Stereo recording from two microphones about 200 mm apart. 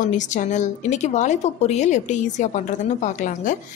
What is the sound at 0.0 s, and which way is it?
A woman's voice, 40° left (ahead or behind).